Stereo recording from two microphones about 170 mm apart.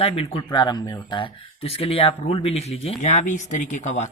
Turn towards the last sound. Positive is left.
turn(degrees=45)  # may be behind; listen again after turning